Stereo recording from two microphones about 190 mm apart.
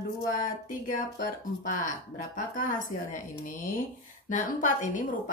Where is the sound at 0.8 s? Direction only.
45° left (ahead or behind).